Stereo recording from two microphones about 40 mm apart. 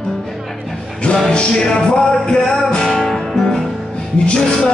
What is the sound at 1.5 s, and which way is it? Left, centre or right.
Music, centre.